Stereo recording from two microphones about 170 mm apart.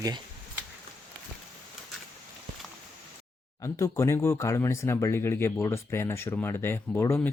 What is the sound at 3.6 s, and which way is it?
Speech, 15° left (ahead or behind).